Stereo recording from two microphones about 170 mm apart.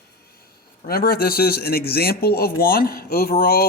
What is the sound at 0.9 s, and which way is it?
Speech, 60° left (ahead or behind).